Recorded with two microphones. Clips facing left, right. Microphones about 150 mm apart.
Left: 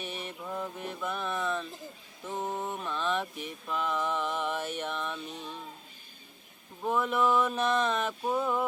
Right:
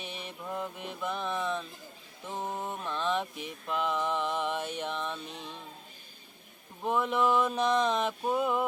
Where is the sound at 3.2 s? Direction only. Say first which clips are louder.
Even; 15° right (ahead or behind).